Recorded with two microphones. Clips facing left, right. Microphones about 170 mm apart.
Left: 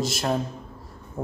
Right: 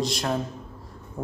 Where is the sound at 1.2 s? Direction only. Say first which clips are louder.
Left 2 dB; 20° left (ahead or behind).